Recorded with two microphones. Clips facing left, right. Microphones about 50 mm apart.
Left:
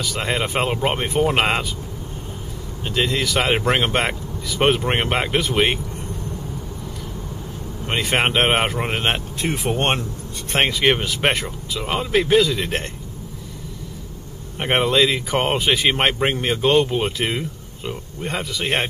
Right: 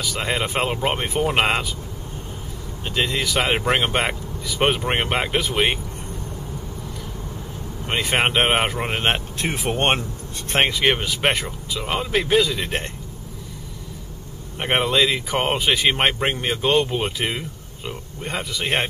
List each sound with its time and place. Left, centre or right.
0.0 s speech: centre
2.8 s speech: centre
7.8 s speech: centre
9.0 s speech: centre
10.5 s speech: centre
14.6 s speech: centre